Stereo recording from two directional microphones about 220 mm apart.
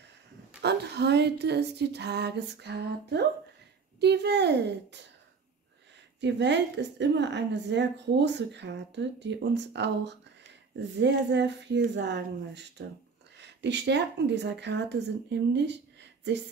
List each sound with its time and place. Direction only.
0.6 s a woman's voice: 50° right (ahead or behind)
6.2 s a woman's voice: 55° right (ahead or behind)